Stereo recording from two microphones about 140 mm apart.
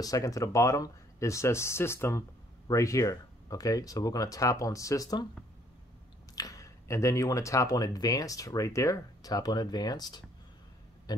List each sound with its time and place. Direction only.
0.0 s speech: 25° left (ahead or behind)
6.3 s speech: 25° left (ahead or behind)
11.1 s a sound: 30° left (ahead or behind)